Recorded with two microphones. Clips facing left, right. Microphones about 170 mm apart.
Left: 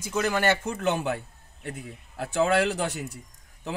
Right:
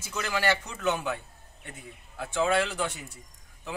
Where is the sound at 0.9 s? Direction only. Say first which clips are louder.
Left 1 dB; 40° left (ahead or behind).